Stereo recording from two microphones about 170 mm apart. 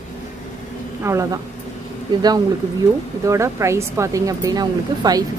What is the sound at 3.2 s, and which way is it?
Speech, 15° right (ahead or behind).